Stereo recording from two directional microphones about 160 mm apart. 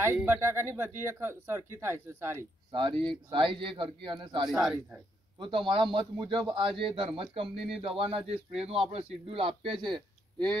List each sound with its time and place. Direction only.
0.0 s speech: 15° right (ahead or behind)
2.7 s speech: 30° right (ahead or behind)
4.5 s speech: centre (ahead or behind)
5.4 s speech: 30° right (ahead or behind)